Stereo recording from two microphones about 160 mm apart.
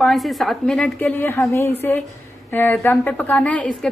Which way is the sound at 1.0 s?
15° left (ahead or behind).